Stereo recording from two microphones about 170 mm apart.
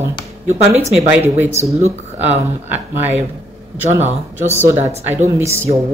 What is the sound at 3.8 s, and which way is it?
Speech, 15° right (ahead or behind).